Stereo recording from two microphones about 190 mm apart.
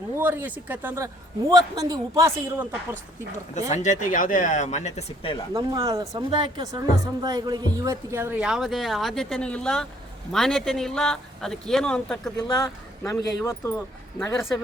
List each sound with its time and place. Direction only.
0.1 s speech: 10° right (ahead or behind)
3.7 s speech: 40° left (ahead or behind)
5.5 s speech: 20° right (ahead or behind); by 12.3 s 5° left (ahead or behind)
12.4 s speech: 20° left (ahead or behind)